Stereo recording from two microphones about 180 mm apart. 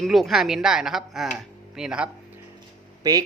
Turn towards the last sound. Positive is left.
turn(degrees=-20)  # may be behind; listen again after turning